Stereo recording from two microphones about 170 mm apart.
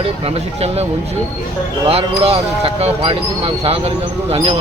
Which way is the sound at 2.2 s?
35° right (ahead or behind).